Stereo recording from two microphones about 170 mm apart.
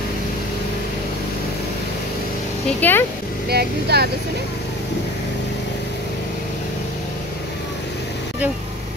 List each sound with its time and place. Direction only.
2.8 s speech: 10° left (ahead or behind)
3.4 s speech: 70° right (ahead or behind)